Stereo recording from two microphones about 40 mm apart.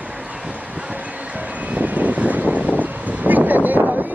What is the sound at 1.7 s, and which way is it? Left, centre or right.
Vehicle, right.